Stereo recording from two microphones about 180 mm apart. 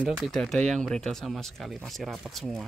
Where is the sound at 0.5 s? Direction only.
40° right (ahead or behind).